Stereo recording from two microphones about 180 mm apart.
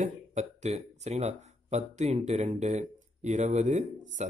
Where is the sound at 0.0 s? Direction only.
40° right (ahead or behind).